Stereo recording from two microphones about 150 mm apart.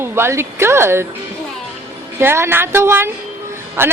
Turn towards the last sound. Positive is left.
turn(degrees=-15)  # may be behind; listen again after turning